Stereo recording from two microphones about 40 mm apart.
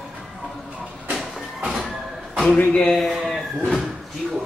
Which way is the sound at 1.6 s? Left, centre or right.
Centre.